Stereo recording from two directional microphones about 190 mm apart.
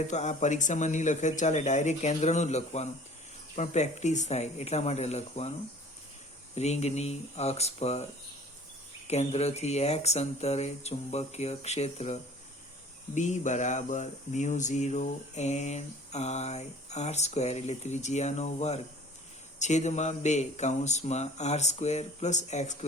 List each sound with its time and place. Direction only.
0.1 s speech: 40° left (ahead or behind)
6.6 s speech: 35° left (ahead or behind)
9.0 s speech: 35° left (ahead or behind)